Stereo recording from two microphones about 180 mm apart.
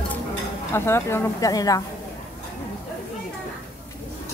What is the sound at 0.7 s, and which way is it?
Speech, 15° left (ahead or behind).